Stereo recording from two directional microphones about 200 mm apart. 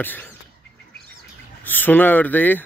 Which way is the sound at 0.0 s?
10° left (ahead or behind).